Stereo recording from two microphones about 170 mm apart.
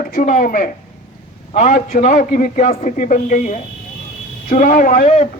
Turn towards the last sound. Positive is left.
turn(degrees=40)  # may be behind; listen again after turning